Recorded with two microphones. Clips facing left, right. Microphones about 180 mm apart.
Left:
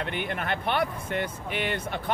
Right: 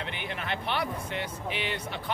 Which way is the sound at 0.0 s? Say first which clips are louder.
Left 5 dB; 50° left (ahead or behind).